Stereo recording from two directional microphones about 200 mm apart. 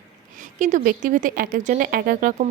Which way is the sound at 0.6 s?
40° right (ahead or behind).